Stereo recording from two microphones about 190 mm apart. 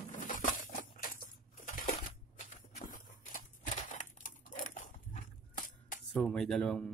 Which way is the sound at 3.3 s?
45° left (ahead or behind).